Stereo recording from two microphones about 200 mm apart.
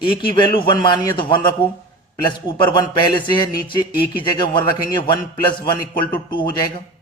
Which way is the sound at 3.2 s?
20° left (ahead or behind).